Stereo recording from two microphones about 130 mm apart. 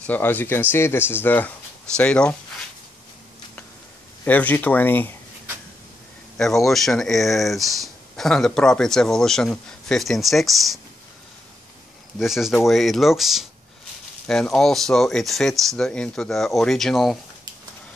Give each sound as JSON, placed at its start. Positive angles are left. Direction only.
{"t": 0.0, "sound": "speech", "side_deg": 15}
{"t": 4.2, "sound": "speech", "side_deg": 10}
{"t": 6.3, "sound": "speech", "side_deg": 5}
{"t": 12.2, "sound": "speech", "side_deg": -5}